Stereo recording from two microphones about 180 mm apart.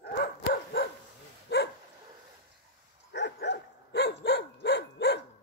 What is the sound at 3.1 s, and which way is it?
Dog, 75° left (ahead or behind).